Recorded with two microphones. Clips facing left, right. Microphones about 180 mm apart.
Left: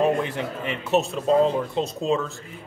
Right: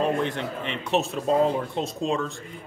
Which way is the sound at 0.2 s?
5° left (ahead or behind).